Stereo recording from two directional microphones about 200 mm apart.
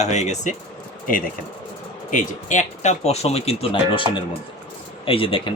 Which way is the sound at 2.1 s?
40° left (ahead or behind).